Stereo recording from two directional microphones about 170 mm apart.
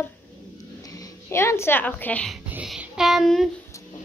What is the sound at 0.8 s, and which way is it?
Speech, 20° left (ahead or behind).